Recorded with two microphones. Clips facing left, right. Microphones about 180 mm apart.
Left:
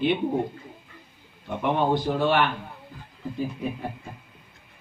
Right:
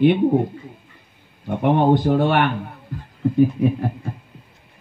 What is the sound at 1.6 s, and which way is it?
Speech, 55° right (ahead or behind).